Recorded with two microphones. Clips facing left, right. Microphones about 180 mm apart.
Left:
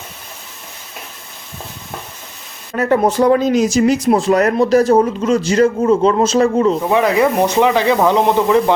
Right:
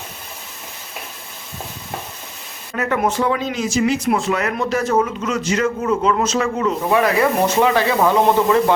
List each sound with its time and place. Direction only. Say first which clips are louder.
2.7 s speech: left 6 dB; 35° left (ahead or behind)
6.9 s speech: even; 20° left (ahead or behind)